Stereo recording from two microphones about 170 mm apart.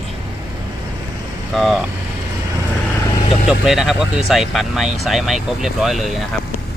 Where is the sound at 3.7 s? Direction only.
Centre (ahead or behind).